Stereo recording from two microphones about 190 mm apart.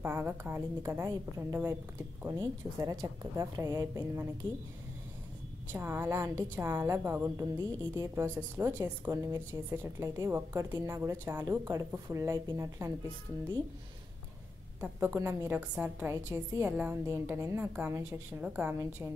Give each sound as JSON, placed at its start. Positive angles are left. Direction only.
{"t": 0.0, "sound": "a woman's voice", "side_deg": -10}
{"t": 5.7, "sound": "a woman's voice", "side_deg": -10}
{"t": 14.8, "sound": "a woman's voice", "side_deg": -10}